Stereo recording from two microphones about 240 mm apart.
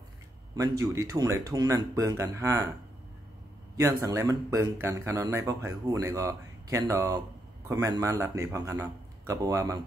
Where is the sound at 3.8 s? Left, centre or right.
Centre.